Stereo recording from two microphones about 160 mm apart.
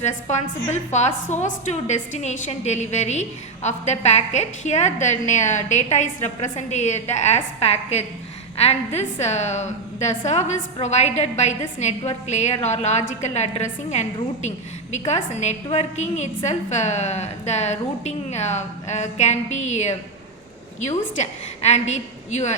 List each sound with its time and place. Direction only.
0.0 s a woman's voice: 45° left (ahead or behind)